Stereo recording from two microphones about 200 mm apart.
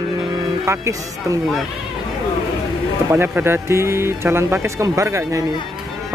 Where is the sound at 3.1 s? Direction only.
10° right (ahead or behind).